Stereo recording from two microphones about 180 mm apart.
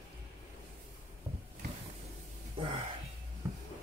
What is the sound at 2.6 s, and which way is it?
Music, 30° right (ahead or behind).